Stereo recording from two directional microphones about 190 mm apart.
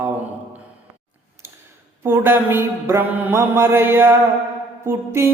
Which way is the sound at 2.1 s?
10° right (ahead or behind).